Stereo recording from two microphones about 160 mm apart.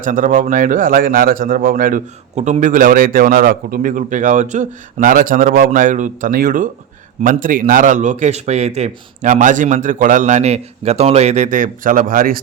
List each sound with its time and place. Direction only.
0.0 s a man's voice: 55° right (ahead or behind)